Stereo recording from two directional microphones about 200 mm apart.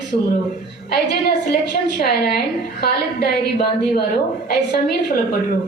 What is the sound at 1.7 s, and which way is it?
A woman's voice, 50° left (ahead or behind).